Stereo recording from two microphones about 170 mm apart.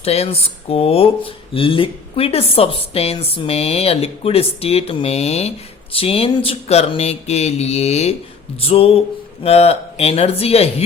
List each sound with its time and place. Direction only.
0.0 s speech: 35° left (ahead or behind)